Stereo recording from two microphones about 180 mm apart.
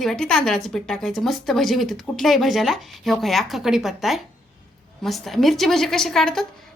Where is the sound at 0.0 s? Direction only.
5° left (ahead or behind).